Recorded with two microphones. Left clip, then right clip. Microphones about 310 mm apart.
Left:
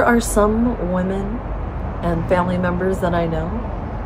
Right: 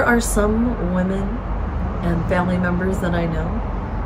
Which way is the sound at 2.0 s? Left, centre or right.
Centre.